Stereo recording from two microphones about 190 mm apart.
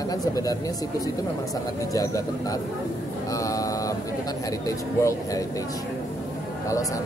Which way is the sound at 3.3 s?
15° left (ahead or behind).